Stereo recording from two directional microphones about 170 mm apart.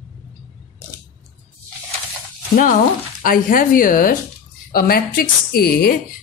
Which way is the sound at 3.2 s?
55° left (ahead or behind).